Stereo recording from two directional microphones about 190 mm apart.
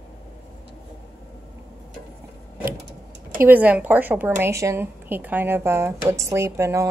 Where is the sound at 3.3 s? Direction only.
10° right (ahead or behind).